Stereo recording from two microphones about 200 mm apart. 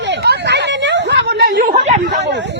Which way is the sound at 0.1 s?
55° right (ahead or behind).